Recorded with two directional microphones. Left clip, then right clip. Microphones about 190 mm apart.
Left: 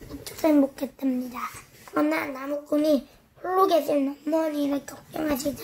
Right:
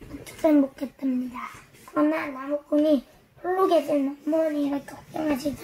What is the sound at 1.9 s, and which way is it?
A child's voice, 65° left (ahead or behind).